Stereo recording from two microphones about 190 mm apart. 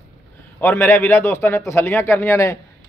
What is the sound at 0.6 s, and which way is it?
A man's voice, 10° left (ahead or behind).